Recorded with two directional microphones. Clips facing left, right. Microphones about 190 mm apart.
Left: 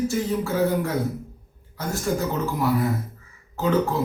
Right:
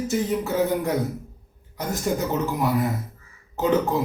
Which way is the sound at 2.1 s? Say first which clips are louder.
Even; 20° right (ahead or behind).